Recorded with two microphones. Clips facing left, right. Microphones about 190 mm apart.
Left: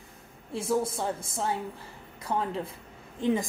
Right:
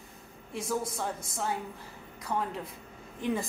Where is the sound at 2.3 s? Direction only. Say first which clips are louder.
Left 3 dB; 30° left (ahead or behind).